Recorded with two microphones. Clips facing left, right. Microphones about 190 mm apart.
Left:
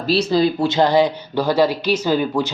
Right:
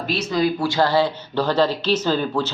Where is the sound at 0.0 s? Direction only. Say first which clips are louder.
Left 4 dB; 35° left (ahead or behind).